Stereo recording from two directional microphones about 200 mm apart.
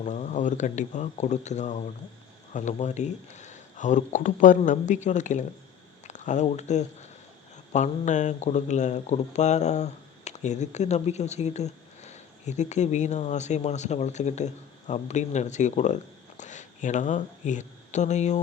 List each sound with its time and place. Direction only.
0.0 s speech: 35° left (ahead or behind)